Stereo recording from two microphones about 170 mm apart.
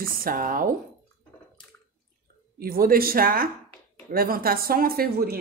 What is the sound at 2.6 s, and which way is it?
Speech, 60° right (ahead or behind).